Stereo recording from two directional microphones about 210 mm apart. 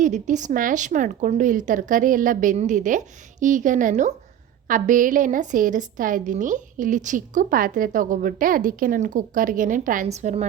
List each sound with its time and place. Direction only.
0.0 s a woman's voice: 35° right (ahead or behind)